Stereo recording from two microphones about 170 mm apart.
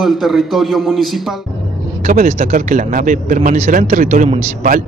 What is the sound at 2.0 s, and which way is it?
Speech, 50° right (ahead or behind).